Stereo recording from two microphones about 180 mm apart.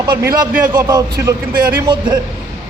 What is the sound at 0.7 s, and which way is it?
Speech, 20° right (ahead or behind).